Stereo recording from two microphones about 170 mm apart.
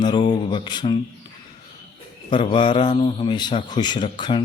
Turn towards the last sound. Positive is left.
turn(degrees=30)  # may be behind; listen again after turning